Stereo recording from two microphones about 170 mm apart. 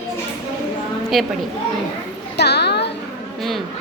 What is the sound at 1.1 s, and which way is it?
Speech, centre (ahead or behind).